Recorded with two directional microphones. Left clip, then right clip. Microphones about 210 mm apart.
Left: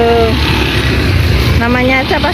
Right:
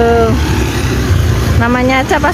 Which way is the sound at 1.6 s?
10° right (ahead or behind).